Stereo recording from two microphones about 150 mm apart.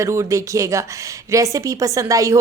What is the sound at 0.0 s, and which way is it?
A woman's voice, 20° right (ahead or behind).